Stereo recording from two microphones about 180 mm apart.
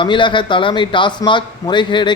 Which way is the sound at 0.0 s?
25° left (ahead or behind).